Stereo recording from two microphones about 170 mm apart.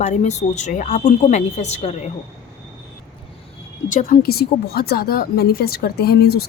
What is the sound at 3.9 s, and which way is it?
Speech, 50° left (ahead or behind).